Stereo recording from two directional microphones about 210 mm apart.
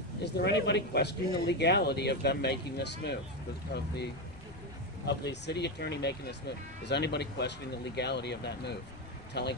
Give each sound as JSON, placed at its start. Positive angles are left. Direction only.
{"t": 0.2, "sound": "speech", "side_deg": 55}
{"t": 5.0, "sound": "speech", "side_deg": 55}